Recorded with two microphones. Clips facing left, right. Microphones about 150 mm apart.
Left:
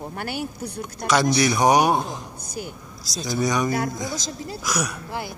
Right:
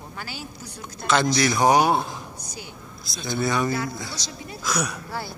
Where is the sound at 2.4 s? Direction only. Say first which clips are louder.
Left 7 dB; 55° left (ahead or behind).